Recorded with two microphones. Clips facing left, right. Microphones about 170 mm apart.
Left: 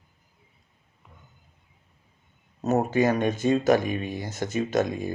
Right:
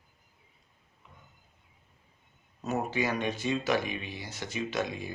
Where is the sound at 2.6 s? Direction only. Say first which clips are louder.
Left 8 dB; 45° left (ahead or behind).